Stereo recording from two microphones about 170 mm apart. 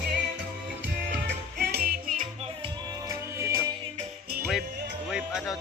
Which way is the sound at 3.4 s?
15° right (ahead or behind).